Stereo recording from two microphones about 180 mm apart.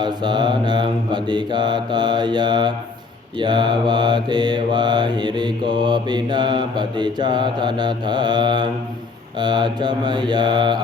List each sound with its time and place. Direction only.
0.0 s mantra: 25° right (ahead or behind)